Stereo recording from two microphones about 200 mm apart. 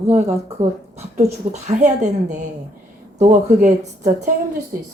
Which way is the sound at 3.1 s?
35° right (ahead or behind).